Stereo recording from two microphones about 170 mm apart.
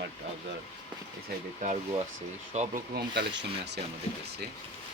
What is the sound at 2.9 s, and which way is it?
Speech, 85° right.